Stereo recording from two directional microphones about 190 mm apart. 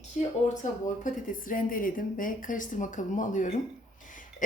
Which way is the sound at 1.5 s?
45° left (ahead or behind).